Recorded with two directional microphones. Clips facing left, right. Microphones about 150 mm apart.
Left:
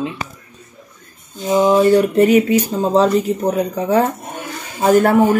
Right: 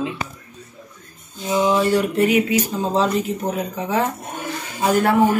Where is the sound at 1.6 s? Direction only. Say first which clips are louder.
Left 6 dB; 40° left (ahead or behind).